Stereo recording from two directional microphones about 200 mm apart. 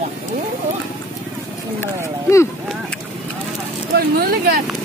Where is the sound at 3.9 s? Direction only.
50° right (ahead or behind).